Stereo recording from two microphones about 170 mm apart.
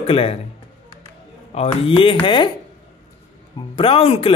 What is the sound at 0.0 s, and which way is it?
Speech, 35° left (ahead or behind).